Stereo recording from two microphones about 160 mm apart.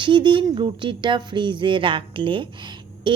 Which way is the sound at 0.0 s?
30° right (ahead or behind).